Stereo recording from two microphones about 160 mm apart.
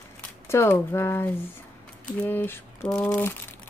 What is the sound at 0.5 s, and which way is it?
Speech, 15° left (ahead or behind).